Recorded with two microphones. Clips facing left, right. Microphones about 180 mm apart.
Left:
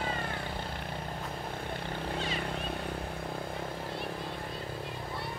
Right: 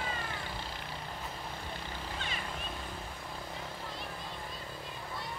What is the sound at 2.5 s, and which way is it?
Vehicle, 65° left (ahead or behind).